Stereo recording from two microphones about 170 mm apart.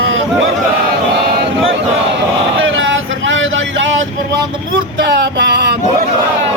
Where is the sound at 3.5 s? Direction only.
90° right.